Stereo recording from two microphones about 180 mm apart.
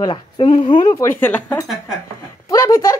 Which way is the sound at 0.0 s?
25° left (ahead or behind).